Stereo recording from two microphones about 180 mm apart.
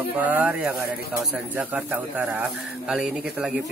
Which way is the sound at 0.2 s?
10° right (ahead or behind).